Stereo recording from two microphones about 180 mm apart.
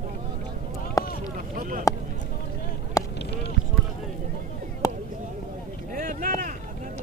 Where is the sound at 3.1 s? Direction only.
70° left (ahead or behind).